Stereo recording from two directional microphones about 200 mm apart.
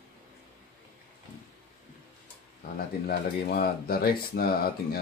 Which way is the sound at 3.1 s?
50° left (ahead or behind).